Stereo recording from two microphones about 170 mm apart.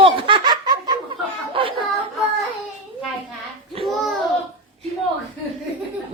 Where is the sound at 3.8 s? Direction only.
35° right (ahead or behind).